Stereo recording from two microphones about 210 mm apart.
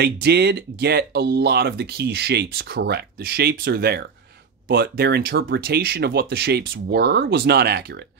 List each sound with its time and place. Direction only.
0.0 s speech: 50° right (ahead or behind)